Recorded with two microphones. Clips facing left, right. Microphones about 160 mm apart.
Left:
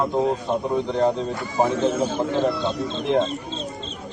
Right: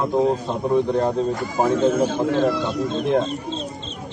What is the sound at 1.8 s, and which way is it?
Speech, 55° right (ahead or behind).